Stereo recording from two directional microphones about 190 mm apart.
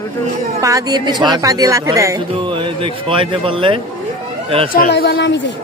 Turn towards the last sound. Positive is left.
turn(degrees=65)  # may be behind; listen again after turning